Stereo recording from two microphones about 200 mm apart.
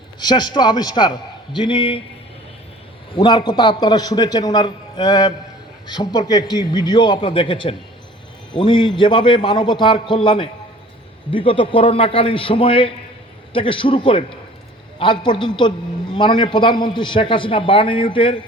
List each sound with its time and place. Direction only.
0.2 s a man's voice: 20° left (ahead or behind)
3.2 s a man's voice: 20° left (ahead or behind)